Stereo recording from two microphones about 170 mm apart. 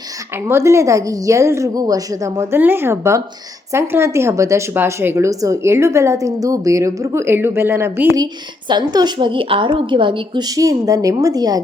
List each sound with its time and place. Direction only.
0.4 s a woman's voice: 15° right (ahead or behind)
8.7 s a woman's voice: 25° right (ahead or behind)